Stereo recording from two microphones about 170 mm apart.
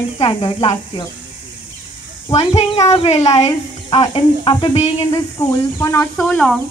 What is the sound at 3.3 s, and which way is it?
Speech, 20° left (ahead or behind).